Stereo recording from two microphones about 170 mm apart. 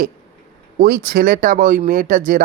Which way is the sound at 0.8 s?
55° right (ahead or behind).